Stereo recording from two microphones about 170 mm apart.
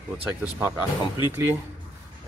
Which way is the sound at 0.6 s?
15° right (ahead or behind).